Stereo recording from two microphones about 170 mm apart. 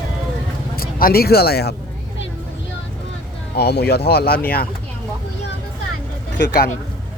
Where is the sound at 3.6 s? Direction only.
70° left (ahead or behind).